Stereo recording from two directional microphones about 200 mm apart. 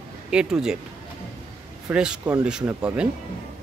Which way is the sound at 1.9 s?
5° right (ahead or behind).